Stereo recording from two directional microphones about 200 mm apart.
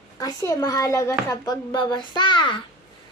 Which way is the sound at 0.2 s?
20° left (ahead or behind).